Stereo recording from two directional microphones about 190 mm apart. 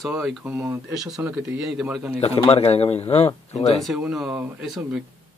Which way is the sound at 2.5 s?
35° left (ahead or behind).